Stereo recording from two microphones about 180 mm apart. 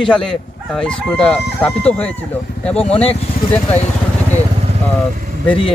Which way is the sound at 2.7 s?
35° left (ahead or behind).